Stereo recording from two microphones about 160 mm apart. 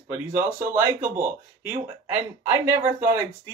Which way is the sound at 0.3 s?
15° right (ahead or behind).